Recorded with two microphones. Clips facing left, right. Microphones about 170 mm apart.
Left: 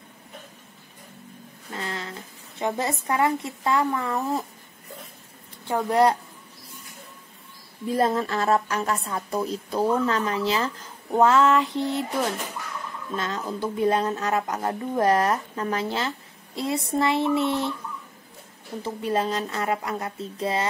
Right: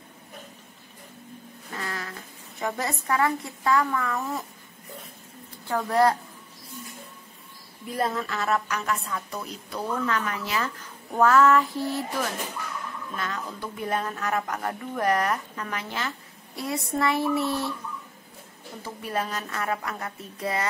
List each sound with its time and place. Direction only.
1.8 s speech: 25° left (ahead or behind)
5.7 s speech: 20° left (ahead or behind)
8.2 s speech: 30° left (ahead or behind)
18.8 s speech: 25° left (ahead or behind)